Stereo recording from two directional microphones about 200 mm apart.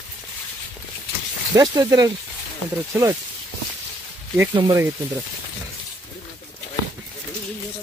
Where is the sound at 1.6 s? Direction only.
20° right (ahead or behind).